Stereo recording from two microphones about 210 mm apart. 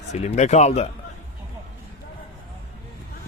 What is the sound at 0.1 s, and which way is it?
Speech, 35° left (ahead or behind).